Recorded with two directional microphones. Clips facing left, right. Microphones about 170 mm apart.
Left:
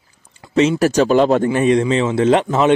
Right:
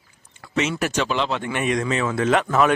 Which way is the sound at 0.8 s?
40° left (ahead or behind).